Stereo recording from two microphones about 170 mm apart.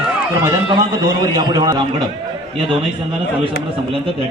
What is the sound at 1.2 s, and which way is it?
Speech, 25° right (ahead or behind).